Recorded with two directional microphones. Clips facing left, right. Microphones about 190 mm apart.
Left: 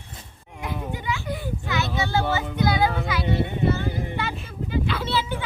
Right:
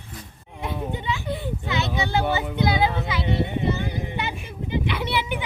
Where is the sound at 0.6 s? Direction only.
25° right (ahead or behind).